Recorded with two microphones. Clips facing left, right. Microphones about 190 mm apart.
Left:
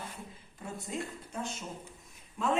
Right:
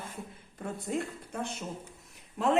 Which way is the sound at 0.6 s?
60° right (ahead or behind).